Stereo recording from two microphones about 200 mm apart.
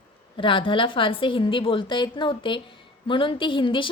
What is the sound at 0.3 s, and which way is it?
A woman's voice, 25° left (ahead or behind).